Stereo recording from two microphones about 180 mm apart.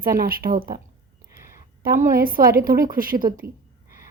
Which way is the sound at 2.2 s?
55° right (ahead or behind).